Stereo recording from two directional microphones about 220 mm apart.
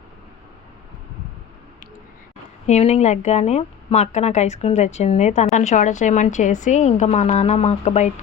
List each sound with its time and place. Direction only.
2.6 s speech: 30° left (ahead or behind)